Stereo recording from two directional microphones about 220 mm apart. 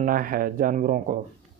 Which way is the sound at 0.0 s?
40° right (ahead or behind).